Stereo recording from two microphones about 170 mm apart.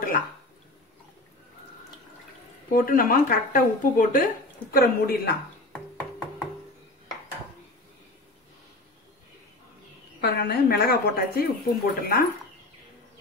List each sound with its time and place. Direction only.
2.7 s speech: 55° left (ahead or behind)
10.2 s speech: 65° left (ahead or behind)